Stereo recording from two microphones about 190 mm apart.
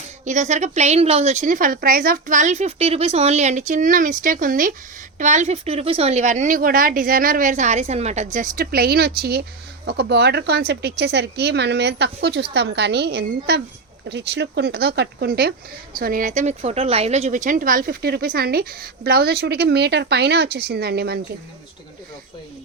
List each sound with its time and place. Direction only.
0.3 s a woman's voice: 40° right (ahead or behind); by 21.2 s 60° right (ahead or behind)